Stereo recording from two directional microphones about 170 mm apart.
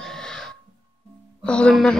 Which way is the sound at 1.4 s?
5° left (ahead or behind).